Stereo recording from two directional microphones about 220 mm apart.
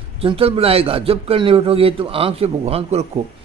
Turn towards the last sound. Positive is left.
turn(degrees=-30)  # may be behind; listen again after turning